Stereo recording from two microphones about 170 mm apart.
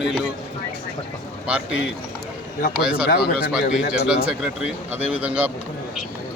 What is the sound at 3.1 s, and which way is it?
Speech, 65° left (ahead or behind).